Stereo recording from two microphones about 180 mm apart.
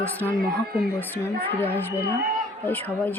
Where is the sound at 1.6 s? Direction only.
10° left (ahead or behind).